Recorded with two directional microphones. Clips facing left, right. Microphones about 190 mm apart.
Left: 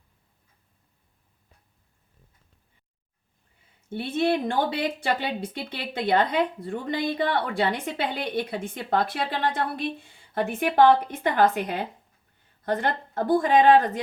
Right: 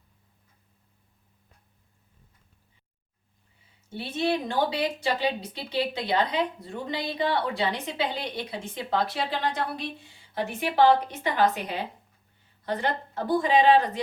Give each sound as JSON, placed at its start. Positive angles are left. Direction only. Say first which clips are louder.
{"t": 3.8, "sound": "speech", "louder": "left 3 dB", "side_deg": 55}